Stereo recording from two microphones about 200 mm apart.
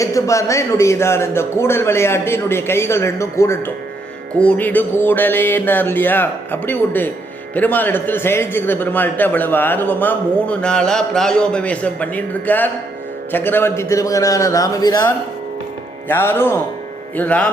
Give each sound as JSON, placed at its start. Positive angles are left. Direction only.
{"t": 0.0, "sound": "a man's voice", "side_deg": 15}